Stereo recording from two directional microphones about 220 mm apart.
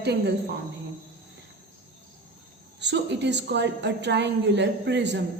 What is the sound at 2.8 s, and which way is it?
A woman's voice, 50° right (ahead or behind).